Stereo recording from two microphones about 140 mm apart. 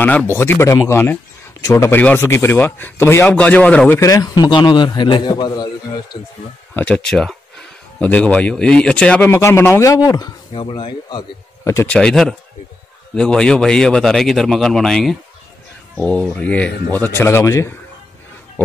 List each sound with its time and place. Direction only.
0.0 s speech: 15° left (ahead or behind)
4.0 s a man's voice: 25° left (ahead or behind)
6.7 s a man's voice: 10° left (ahead or behind); by 11.2 s 30° left (ahead or behind)
11.6 s speech: 20° left (ahead or behind)
11.9 s a man's voice: 5° left (ahead or behind); by 17.7 s 20° left (ahead or behind)